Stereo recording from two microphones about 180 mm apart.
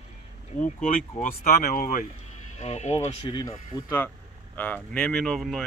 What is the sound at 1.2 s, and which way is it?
Speech, 45° left (ahead or behind).